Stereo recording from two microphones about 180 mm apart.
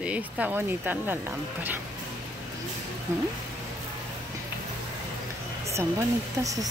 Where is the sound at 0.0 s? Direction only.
10° right (ahead or behind).